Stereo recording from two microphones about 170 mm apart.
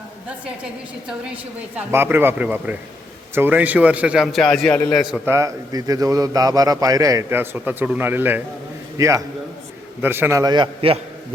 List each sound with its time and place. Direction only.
1.9 s a man's voice: 10° right (ahead or behind); by 5.0 s 10° left (ahead or behind)
5.0 s a man's voice: 5° right (ahead or behind)
5.3 s a man's voice: 20° right (ahead or behind)